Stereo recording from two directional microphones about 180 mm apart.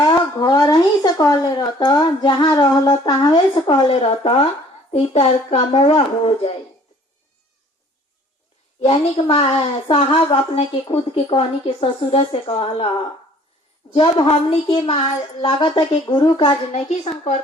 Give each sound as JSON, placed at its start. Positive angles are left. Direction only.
{"t": 0.0, "sound": "a woman's voice", "side_deg": 20}
{"t": 8.8, "sound": "a woman's voice", "side_deg": 30}
{"t": 13.9, "sound": "a woman's voice", "side_deg": 30}